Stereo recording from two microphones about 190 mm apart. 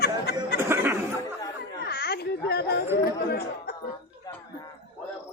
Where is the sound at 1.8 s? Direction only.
55° left (ahead or behind).